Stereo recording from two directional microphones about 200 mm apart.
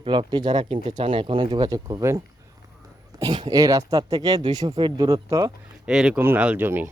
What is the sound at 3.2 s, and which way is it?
Speech, 20° right (ahead or behind).